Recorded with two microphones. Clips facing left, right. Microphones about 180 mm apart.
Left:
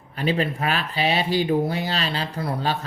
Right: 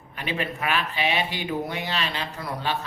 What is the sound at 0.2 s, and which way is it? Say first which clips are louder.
Speech: left 6 dB; 35° left (ahead or behind).